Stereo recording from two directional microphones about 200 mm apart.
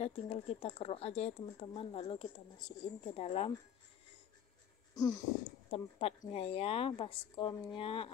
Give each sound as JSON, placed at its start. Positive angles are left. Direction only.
{"t": 0.0, "sound": "a woman's voice", "side_deg": 30}
{"t": 4.9, "sound": "wheeze", "side_deg": 20}
{"t": 5.7, "sound": "a woman's voice", "side_deg": 30}